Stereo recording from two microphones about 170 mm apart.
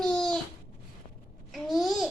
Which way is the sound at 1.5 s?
Centre (ahead or behind).